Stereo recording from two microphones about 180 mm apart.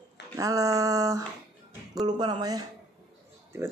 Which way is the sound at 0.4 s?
20° right (ahead or behind).